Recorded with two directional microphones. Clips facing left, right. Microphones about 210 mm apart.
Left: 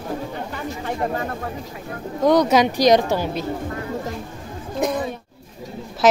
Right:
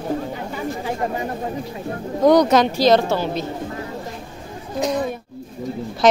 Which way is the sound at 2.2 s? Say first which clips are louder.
Right 2 dB; 5° left (ahead or behind).